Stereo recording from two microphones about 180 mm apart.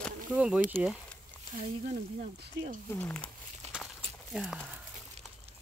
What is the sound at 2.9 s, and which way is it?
Speech, 10° left (ahead or behind).